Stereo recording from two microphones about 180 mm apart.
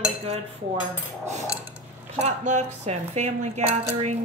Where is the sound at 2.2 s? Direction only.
40° right (ahead or behind).